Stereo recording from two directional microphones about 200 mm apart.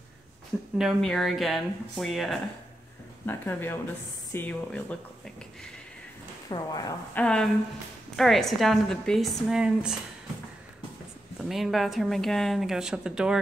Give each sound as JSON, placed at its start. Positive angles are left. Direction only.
{"t": 0.7, "sound": "speech", "side_deg": 0}
{"t": 6.5, "sound": "speech", "side_deg": 20}
{"t": 7.2, "sound": "speech", "side_deg": 5}
{"t": 11.4, "sound": "speech", "side_deg": 0}